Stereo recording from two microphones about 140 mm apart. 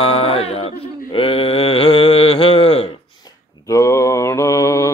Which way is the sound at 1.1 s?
40° left (ahead or behind).